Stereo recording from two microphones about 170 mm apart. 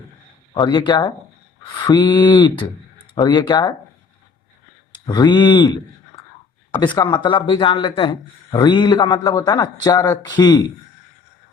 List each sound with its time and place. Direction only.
0.5 s speech: 25° left (ahead or behind)
5.0 s speech: 25° left (ahead or behind)
6.1 s whispering: 20° left (ahead or behind)
6.8 s speech: 25° left (ahead or behind)